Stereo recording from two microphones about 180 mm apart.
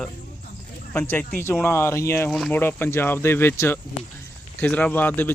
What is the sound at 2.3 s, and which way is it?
Speech, centre (ahead or behind).